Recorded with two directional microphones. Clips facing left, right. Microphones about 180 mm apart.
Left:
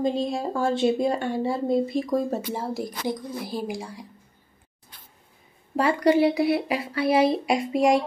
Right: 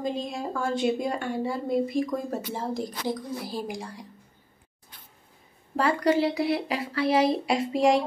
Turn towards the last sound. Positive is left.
turn(degrees=10)  # may be behind; listen again after turning